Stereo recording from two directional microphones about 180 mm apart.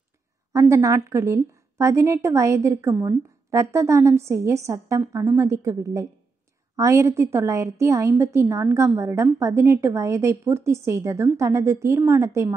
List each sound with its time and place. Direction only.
0.5 s a woman's voice: 15° right (ahead or behind)